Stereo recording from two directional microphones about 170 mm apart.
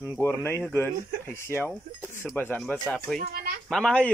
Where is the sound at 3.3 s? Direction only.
60° right (ahead or behind).